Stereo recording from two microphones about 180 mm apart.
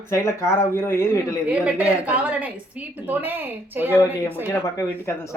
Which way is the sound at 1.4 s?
5° right (ahead or behind).